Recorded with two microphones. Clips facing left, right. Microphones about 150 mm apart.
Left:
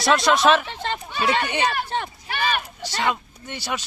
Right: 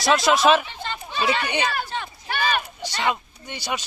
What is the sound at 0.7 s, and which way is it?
Chatter, 75° left (ahead or behind).